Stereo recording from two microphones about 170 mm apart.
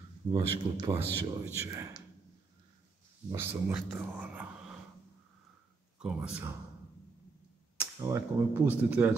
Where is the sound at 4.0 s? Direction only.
10° right (ahead or behind).